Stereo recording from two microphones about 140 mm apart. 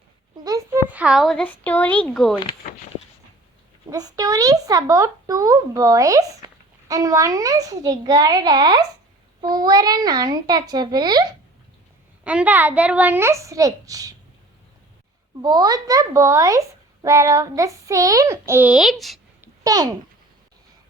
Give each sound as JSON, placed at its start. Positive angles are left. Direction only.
{"t": 0.4, "sound": "speech", "side_deg": -20}
{"t": 3.8, "sound": "a child's voice", "side_deg": -25}
{"t": 12.2, "sound": "a child's voice", "side_deg": -10}
{"t": 15.4, "sound": "a child's voice", "side_deg": -30}
{"t": 18.7, "sound": "speech", "side_deg": 0}
{"t": 19.4, "sound": "a sound", "side_deg": -25}